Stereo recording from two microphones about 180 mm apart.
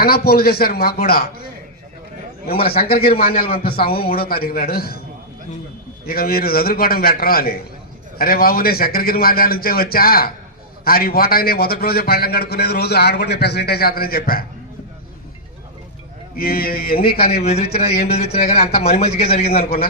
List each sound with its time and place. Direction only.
0.0 s a man's voice: 60° left (ahead or behind)
2.5 s a man's voice: 60° left (ahead or behind)
6.1 s a man's voice: 55° left (ahead or behind)
16.4 s a man's voice: 55° left (ahead or behind)
17.4 s speech: 35° left (ahead or behind)